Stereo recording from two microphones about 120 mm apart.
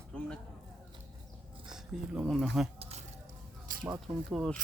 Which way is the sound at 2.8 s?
60° right (ahead or behind).